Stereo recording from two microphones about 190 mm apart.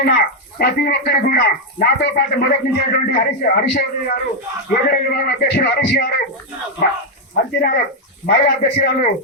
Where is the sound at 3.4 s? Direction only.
50° left (ahead or behind).